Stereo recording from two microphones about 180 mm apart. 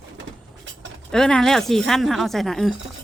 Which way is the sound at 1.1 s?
5° left (ahead or behind).